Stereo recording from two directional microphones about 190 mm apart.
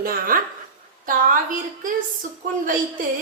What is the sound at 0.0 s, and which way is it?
A woman's voice, 50° right (ahead or behind).